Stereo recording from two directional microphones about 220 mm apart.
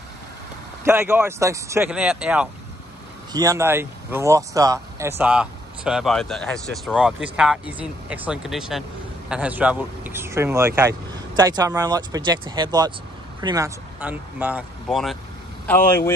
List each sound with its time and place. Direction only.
0.8 s speech: 10° right (ahead or behind); by 16.0 s 10° left (ahead or behind)